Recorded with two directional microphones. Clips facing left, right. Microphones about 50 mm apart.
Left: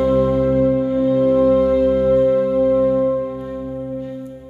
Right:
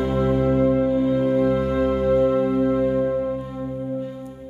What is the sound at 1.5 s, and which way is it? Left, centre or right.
Music, right.